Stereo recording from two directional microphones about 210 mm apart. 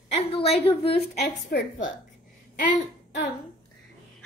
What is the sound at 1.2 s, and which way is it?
Speech, 55° left (ahead or behind).